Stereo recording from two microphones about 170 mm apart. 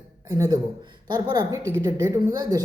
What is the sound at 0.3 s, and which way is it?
Speech, 20° right (ahead or behind).